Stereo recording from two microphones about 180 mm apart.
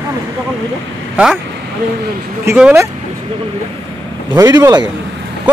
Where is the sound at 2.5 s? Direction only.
15° right (ahead or behind).